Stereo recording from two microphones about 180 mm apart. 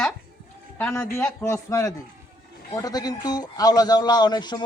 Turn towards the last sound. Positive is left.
turn(degrees=25)  # may be behind; listen again after turning